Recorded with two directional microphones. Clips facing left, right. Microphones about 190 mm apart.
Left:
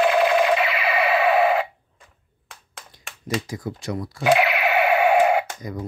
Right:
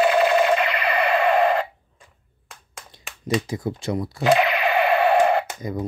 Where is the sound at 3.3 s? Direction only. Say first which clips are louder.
Right 3 dB; 25° right (ahead or behind).